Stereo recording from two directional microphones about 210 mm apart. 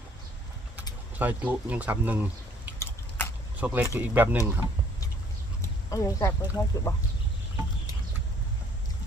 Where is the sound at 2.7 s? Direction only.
10° left (ahead or behind).